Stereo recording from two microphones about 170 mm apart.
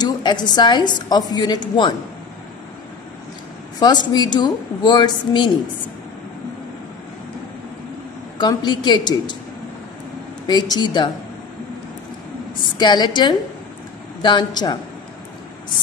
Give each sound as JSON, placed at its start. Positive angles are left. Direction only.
{"t": 0.0, "sound": "a woman's voice", "side_deg": 25}
{"t": 3.8, "sound": "a woman's voice", "side_deg": 25}
{"t": 8.4, "sound": "a woman's voice", "side_deg": 25}
{"t": 10.4, "sound": "a woman's voice", "side_deg": 25}
{"t": 12.7, "sound": "a woman's voice", "side_deg": 25}